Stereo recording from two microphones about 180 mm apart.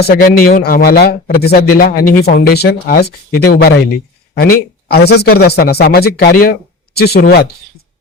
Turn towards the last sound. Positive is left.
turn(degrees=55)  # may be behind; listen again after turning